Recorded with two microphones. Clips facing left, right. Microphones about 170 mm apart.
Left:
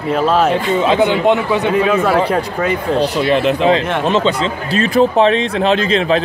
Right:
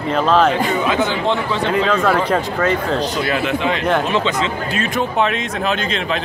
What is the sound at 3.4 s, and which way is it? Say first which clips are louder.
Speech: left 5 dB; 35° left (ahead or behind).